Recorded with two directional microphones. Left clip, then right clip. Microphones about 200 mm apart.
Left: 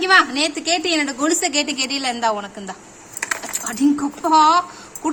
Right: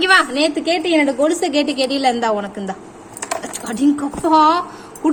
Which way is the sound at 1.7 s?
35° left (ahead or behind).